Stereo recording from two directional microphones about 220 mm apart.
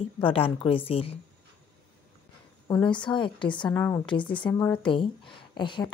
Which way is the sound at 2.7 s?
20° left (ahead or behind).